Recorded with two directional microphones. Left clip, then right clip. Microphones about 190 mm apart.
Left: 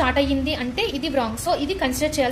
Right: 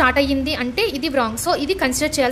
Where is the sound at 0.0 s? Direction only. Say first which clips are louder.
Right 4 dB; 25° right (ahead or behind).